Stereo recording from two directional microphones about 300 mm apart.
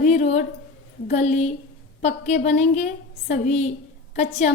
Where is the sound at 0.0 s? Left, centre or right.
Left.